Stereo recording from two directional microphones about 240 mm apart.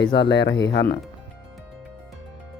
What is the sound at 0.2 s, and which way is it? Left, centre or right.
Speech, left.